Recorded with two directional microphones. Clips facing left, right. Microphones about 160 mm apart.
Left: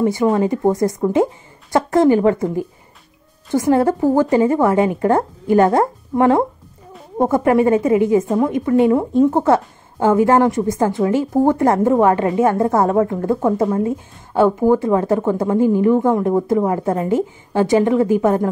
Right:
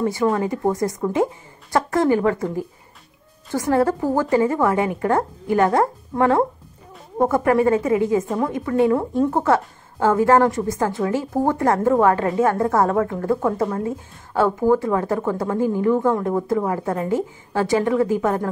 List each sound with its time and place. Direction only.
0.0 s a woman's voice: 20° left (ahead or behind)